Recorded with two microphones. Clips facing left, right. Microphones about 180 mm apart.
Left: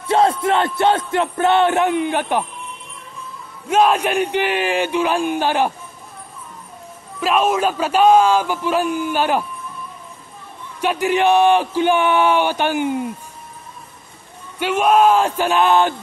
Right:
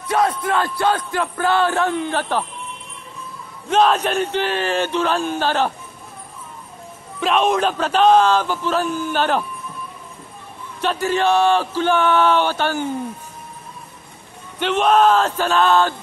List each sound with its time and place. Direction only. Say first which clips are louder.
0.0 s a sound: left 3 dB; 25° left (ahead or behind)
0.7 s speech: left 3 dB; 25° left (ahead or behind)
3.6 s speech: left 1 dB; 10° left (ahead or behind)
7.2 s speech: even; 5° left (ahead or behind)
10.8 s speech: left 2 dB; 15° left (ahead or behind)
14.6 s speech: left 1 dB; 10° left (ahead or behind)